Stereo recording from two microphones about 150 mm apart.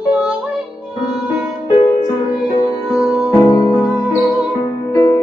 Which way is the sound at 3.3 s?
25° left (ahead or behind).